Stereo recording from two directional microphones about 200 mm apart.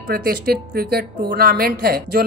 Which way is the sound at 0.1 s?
50° right (ahead or behind).